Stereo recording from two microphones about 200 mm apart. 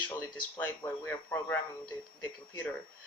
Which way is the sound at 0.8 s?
20° left (ahead or behind).